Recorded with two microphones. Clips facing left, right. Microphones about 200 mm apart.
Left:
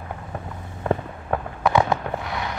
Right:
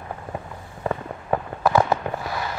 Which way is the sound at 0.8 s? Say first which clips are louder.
Left 1 dB; 5° right (ahead or behind).